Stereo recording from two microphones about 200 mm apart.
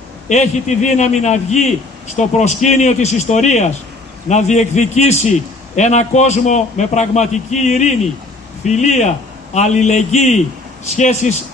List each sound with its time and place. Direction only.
0.3 s a man's voice: 35° left (ahead or behind)